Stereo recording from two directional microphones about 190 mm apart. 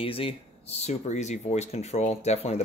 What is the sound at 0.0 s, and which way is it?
Speech, 30° left (ahead or behind).